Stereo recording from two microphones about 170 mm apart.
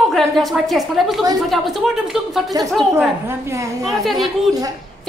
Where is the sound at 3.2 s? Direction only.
15° right (ahead or behind).